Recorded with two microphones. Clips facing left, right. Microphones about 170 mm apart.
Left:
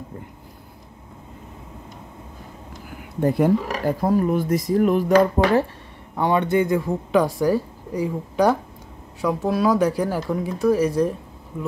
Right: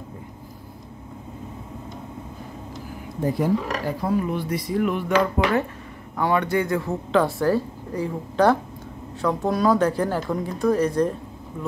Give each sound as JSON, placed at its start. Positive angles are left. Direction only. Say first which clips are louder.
{"t": 3.2, "sound": "speech", "louder": "left 4 dB", "side_deg": 60}
{"t": 3.8, "sound": "speech", "louder": "left 4 dB", "side_deg": 45}
{"t": 6.1, "sound": "a man's voice", "louder": "left 2 dB", "side_deg": 20}